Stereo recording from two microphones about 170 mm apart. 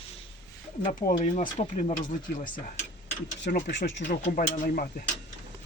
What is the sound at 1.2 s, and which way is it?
Speech, 45° left (ahead or behind).